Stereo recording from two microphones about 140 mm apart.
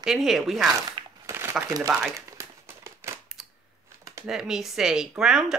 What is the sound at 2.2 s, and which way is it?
Crumpling, 20° right (ahead or behind).